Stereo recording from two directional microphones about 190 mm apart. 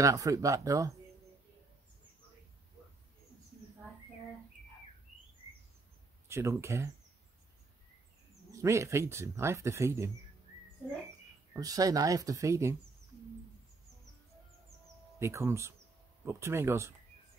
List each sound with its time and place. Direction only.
0.0 s speech: 15° right (ahead or behind)
6.2 s speech: 15° right (ahead or behind)
8.5 s speech: 15° right (ahead or behind)
11.5 s speech: 20° right (ahead or behind)
15.1 s speech: 15° right (ahead or behind)